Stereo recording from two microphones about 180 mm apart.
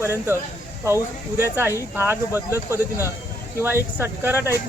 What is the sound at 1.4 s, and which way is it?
Speech, 10° right (ahead or behind).